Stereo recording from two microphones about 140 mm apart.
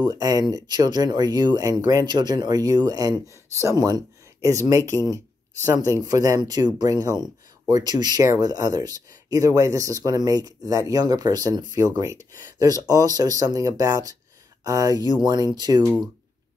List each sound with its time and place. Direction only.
0.0 s speech: 25° right (ahead or behind)